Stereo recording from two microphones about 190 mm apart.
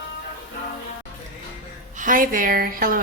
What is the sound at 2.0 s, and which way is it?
Speech, 45° right (ahead or behind).